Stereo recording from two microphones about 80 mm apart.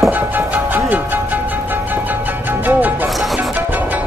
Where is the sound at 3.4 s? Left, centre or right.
Centre.